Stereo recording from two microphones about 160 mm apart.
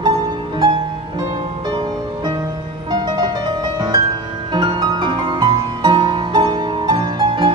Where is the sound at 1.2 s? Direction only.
25° right (ahead or behind).